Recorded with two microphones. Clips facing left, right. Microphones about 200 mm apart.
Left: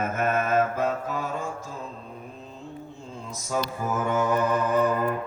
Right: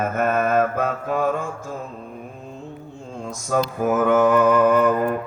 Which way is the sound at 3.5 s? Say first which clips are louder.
Right 7 dB; 70° right (ahead or behind).